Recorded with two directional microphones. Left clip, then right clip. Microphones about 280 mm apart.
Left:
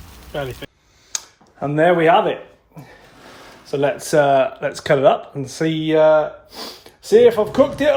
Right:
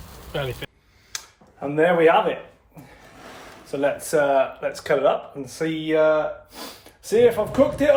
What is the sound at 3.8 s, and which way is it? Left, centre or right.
Speech, left.